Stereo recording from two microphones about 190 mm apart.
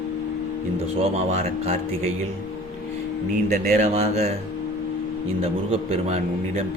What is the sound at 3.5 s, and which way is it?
Speech, 40° right (ahead or behind).